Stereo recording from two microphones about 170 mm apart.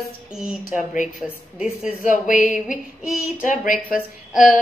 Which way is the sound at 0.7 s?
50° left (ahead or behind).